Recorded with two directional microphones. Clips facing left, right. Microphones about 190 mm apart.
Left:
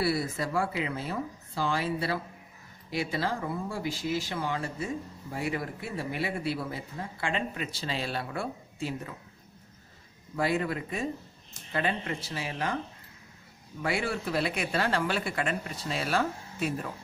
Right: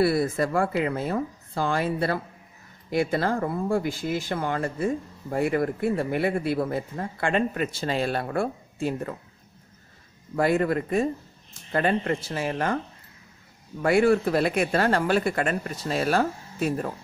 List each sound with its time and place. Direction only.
0.0 s speech: 50° right (ahead or behind)
10.3 s speech: 50° right (ahead or behind)
13.8 s speech: 50° right (ahead or behind)